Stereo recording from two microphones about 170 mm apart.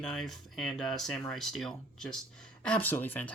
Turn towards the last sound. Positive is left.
turn(degrees=10)  # may be behind; listen again after turning